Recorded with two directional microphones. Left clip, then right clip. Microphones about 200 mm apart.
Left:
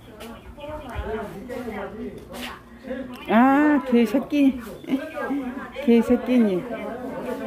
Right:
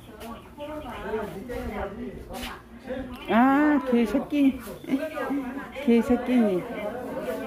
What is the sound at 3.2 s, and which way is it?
A woman's voice, 20° left (ahead or behind).